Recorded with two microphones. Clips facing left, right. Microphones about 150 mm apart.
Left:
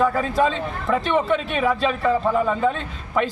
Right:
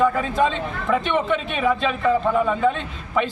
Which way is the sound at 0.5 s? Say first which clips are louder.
Even; 35° left (ahead or behind).